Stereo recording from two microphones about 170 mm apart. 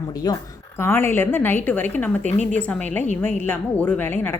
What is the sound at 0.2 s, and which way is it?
A woman's voice, 25° left (ahead or behind).